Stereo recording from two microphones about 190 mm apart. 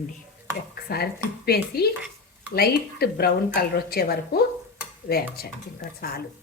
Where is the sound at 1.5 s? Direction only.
55° left (ahead or behind).